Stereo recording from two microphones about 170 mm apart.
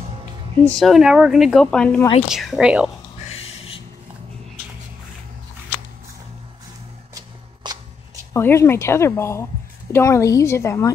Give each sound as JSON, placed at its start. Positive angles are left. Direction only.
{"t": 0.7, "sound": "speech", "side_deg": 0}
{"t": 3.3, "sound": "a sound", "side_deg": 35}
{"t": 7.7, "sound": "shuffling cards", "side_deg": -25}
{"t": 8.3, "sound": "speech", "side_deg": 15}